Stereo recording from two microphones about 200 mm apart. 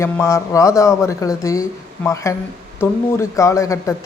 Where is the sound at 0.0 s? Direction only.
15° left (ahead or behind).